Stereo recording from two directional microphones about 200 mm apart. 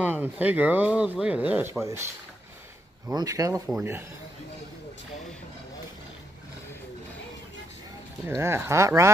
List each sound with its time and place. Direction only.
0.0 s speech: 10° right (ahead or behind)
3.1 s speech: 15° right (ahead or behind)
8.4 s speech: 10° right (ahead or behind)